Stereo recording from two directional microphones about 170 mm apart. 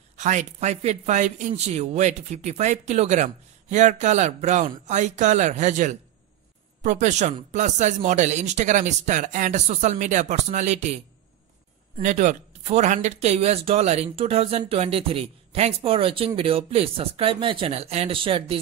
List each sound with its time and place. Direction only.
0.2 s speech: 45° right (ahead or behind)
12.0 s speech: 45° right (ahead or behind)